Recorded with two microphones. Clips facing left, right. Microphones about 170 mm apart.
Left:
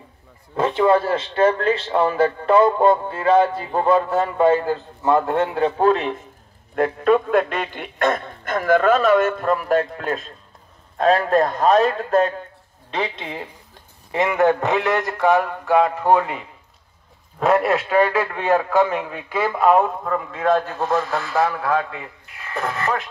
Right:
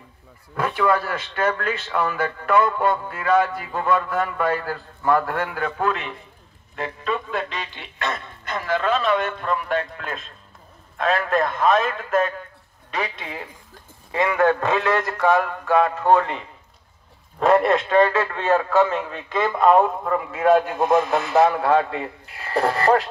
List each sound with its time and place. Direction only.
0.6 s speech: 25° left (ahead or behind)
6.7 s a man's voice: 55° left (ahead or behind); by 23.0 s 35° right (ahead or behind)